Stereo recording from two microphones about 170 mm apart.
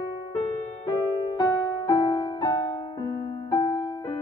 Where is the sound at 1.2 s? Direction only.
20° left (ahead or behind).